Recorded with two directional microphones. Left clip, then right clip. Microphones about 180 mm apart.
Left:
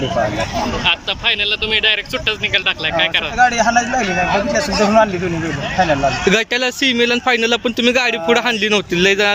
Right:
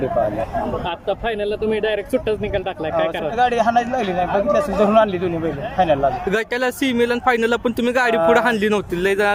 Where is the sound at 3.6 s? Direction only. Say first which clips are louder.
Left 3 dB; 5° right (ahead or behind).